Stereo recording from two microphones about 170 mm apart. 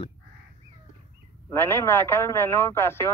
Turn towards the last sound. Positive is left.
turn(degrees=15)  # may be behind; listen again after turning